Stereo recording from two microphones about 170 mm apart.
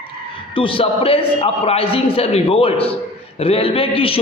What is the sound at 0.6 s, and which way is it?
A man's voice, 30° left (ahead or behind).